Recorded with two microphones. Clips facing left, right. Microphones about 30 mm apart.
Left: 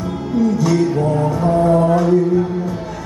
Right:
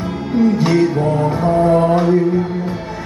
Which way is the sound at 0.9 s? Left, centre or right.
Right.